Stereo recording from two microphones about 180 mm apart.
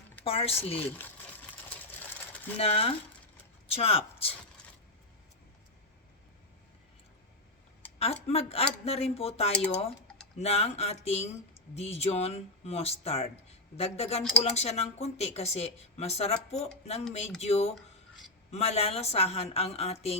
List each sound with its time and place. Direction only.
0.3 s speech: 30° left (ahead or behind)
1.9 s sewing machine: 10° left (ahead or behind)
2.6 s speech: 35° left (ahead or behind)
7.9 s speech: 35° left (ahead or behind)